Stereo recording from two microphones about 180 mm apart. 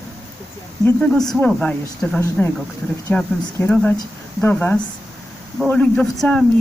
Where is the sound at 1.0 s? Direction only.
5° left (ahead or behind).